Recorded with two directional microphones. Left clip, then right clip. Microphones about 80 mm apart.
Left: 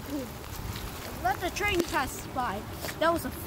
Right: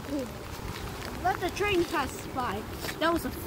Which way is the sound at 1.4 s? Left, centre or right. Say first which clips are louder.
Right 1 dB; left.